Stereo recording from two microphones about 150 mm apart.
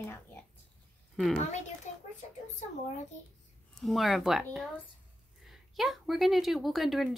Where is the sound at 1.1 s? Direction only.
Centre (ahead or behind).